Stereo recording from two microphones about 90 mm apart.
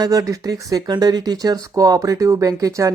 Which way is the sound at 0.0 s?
40° right (ahead or behind).